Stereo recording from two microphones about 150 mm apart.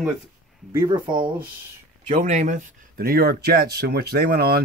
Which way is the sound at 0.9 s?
30° right (ahead or behind).